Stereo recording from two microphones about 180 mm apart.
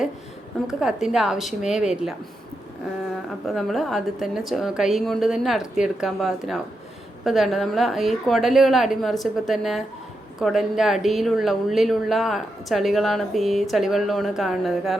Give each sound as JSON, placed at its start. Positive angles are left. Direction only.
{"t": 0.7, "sound": "speech", "side_deg": -5}
{"t": 3.4, "sound": "speech", "side_deg": 0}